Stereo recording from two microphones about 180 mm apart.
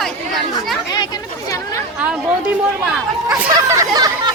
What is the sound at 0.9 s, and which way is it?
Speech, 20° left (ahead or behind).